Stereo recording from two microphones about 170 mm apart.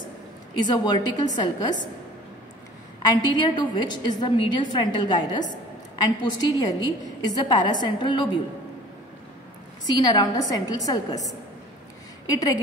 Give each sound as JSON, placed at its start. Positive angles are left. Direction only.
{"t": 0.6, "sound": "a woman's voice", "side_deg": 25}
{"t": 3.1, "sound": "a woman's voice", "side_deg": 25}
{"t": 9.8, "sound": "a woman's voice", "side_deg": 25}
{"t": 12.3, "sound": "a woman's voice", "side_deg": 20}